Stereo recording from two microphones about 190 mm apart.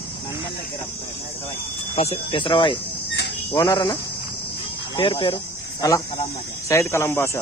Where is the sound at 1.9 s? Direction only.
30° left (ahead or behind); by 7.4 s 10° left (ahead or behind).